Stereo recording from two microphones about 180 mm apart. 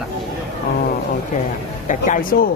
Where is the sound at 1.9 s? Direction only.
50° left (ahead or behind).